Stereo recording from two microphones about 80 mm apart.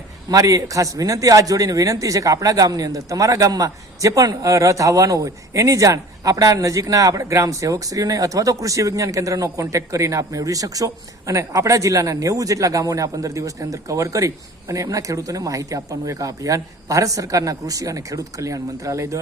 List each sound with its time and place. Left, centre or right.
0.3 s a man's voice: right